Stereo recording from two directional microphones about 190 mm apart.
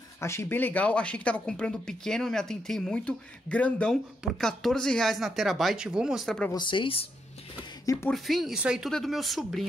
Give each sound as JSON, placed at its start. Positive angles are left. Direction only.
{"t": 0.2, "sound": "speech", "side_deg": 15}
{"t": 6.5, "sound": "speech", "side_deg": 25}
{"t": 7.8, "sound": "speech", "side_deg": 15}
{"t": 8.1, "sound": "speech", "side_deg": 0}